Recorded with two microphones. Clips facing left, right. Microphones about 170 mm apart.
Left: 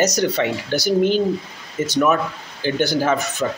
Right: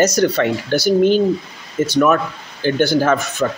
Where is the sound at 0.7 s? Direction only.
50° right (ahead or behind).